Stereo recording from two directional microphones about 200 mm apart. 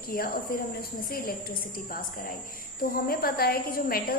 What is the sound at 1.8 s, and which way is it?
A woman's voice, 45° left (ahead or behind).